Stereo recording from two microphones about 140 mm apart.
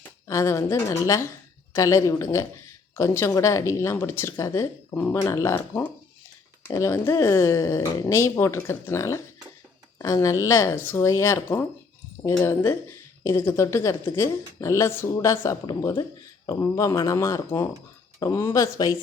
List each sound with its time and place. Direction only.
0.3 s a woman's voice: 20° left (ahead or behind)